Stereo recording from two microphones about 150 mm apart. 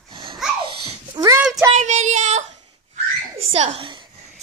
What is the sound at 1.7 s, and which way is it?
Child singing, 50° right (ahead or behind).